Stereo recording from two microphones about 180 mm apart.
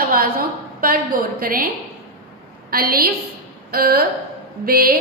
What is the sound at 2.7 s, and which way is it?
A woman's voice, 55° right (ahead or behind).